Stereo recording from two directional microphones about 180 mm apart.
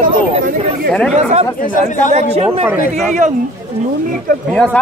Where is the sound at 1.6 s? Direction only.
45° left (ahead or behind).